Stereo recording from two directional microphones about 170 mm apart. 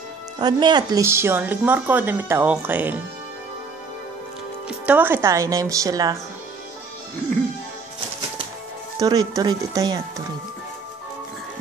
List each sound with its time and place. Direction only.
0.4 s a woman's voice: 25° right (ahead or behind)
4.6 s a woman's voice: 10° right (ahead or behind)
8.9 s speech: 20° right (ahead or behind)